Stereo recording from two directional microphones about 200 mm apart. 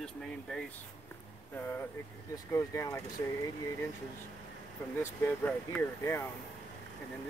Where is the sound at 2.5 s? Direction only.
15° left (ahead or behind).